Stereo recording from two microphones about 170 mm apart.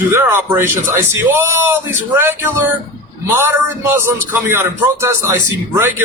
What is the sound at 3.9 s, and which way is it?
A man's voice, 15° right (ahead or behind).